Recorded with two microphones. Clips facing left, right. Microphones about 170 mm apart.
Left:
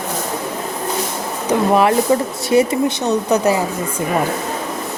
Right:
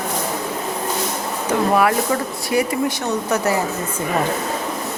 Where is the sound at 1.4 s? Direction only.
20° left (ahead or behind).